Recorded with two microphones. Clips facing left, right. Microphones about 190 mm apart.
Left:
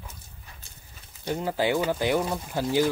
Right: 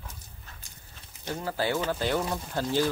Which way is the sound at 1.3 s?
15° left (ahead or behind).